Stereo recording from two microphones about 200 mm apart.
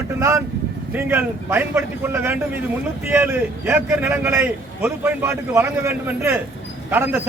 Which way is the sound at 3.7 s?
10° right (ahead or behind).